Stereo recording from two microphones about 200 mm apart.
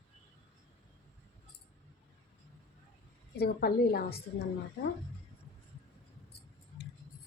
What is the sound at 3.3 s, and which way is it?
Speech, 50° left (ahead or behind).